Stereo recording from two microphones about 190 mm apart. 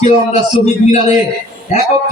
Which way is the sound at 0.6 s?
35° left (ahead or behind).